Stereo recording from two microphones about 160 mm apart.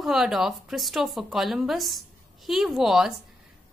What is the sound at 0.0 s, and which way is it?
A woman's voice, centre (ahead or behind).